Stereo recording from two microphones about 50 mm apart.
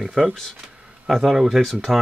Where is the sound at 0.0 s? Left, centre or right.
Centre.